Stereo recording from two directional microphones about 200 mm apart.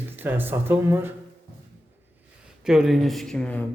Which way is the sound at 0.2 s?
10° right (ahead or behind).